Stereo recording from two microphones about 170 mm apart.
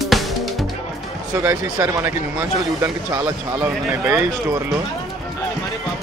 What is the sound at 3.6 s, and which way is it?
Speech, 15° right (ahead or behind).